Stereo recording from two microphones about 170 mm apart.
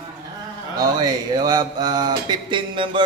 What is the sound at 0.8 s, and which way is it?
Mantra, 25° right (ahead or behind).